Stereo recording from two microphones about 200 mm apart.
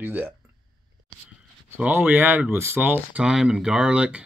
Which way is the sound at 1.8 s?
10° right (ahead or behind).